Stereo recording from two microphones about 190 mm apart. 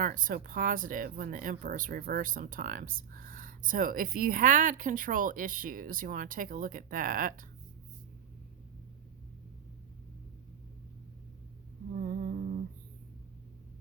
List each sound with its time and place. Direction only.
0.0 s speech: 45° right (ahead or behind)
11.9 s humming: 45° right (ahead or behind)